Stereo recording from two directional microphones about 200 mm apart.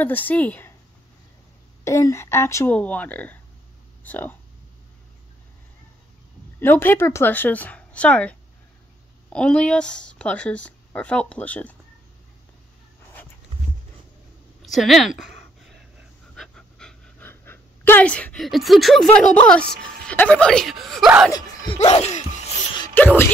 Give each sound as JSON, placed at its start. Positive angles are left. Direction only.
{"t": 0.0, "sound": "speech", "side_deg": 10}
{"t": 1.9, "sound": "speech", "side_deg": 15}
{"t": 6.6, "sound": "speech", "side_deg": 10}
{"t": 14.6, "sound": "a sound", "side_deg": 0}
{"t": 16.3, "sound": "pant", "side_deg": 5}
{"t": 19.3, "sound": "speech", "side_deg": 5}
{"t": 21.3, "sound": "speech", "side_deg": 20}
{"t": 22.9, "sound": "speech", "side_deg": 10}